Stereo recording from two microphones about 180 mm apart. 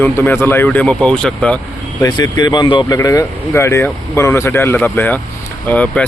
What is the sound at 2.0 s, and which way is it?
Speech, 25° left (ahead or behind).